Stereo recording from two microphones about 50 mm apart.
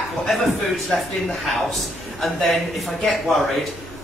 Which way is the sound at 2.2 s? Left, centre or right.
Centre.